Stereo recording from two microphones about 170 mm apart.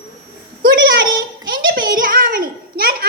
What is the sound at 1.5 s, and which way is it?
A child's voice, 60° right (ahead or behind).